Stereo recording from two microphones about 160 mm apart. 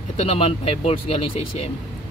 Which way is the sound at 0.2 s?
40° left (ahead or behind).